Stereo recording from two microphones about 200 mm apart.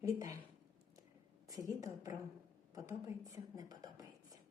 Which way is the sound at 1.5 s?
15° right (ahead or behind).